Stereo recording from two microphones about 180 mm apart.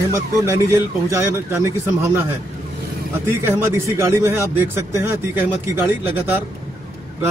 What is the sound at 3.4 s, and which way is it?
A man's voice, 15° right (ahead or behind).